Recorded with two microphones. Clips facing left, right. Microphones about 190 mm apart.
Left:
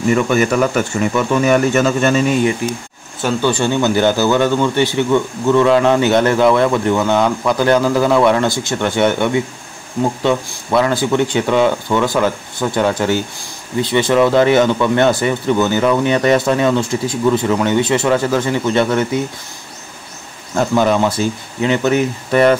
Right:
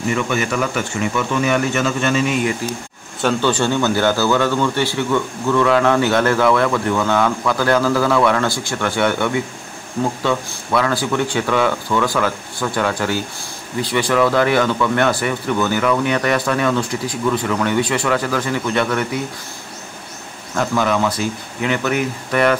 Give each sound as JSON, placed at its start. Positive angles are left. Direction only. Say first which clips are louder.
{"t": 0.1, "sound": "speech", "louder": "left 6 dB", "side_deg": 45}
{"t": 2.6, "sound": "speech", "louder": "left 4 dB", "side_deg": 20}
{"t": 3.2, "sound": "speech", "louder": "left 1 dB", "side_deg": 10}
{"t": 20.5, "sound": "speech", "louder": "left 4 dB", "side_deg": 30}